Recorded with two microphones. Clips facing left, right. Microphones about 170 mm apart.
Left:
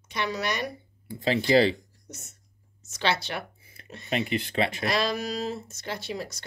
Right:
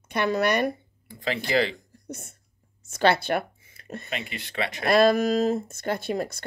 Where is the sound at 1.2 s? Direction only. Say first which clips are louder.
Left 4 dB; 30° left (ahead or behind).